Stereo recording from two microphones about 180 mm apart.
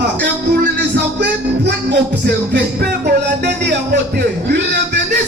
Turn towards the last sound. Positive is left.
turn(degrees=-70)  # may be behind; listen again after turning